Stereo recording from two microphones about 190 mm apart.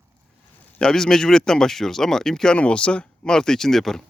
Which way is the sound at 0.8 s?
5° left (ahead or behind).